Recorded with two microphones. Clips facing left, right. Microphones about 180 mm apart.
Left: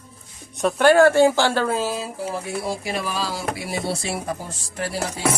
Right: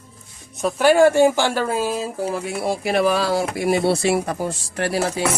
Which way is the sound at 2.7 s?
65° right (ahead or behind).